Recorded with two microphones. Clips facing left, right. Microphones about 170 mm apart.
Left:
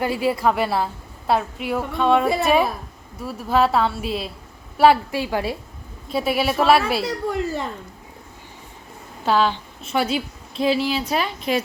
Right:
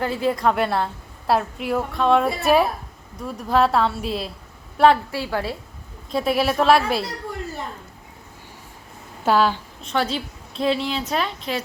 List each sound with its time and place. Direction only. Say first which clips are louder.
0.0 s a woman's voice: left 1 dB; 10° left (ahead or behind)
4.8 s a woman's voice: left 1 dB; 10° left (ahead or behind)
6.1 s a woman's voice: right 1 dB; 5° left (ahead or behind)
7.0 s speech: left 7 dB; 85° left
9.2 s speech: right 1 dB; 10° right (ahead or behind)
9.8 s a woman's voice: left 2 dB; 10° left (ahead or behind)